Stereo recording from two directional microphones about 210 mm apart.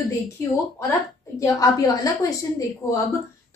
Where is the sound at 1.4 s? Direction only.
15° left (ahead or behind).